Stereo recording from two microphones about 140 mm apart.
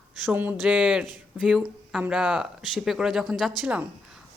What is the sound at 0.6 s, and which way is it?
A woman's voice, 5° right (ahead or behind).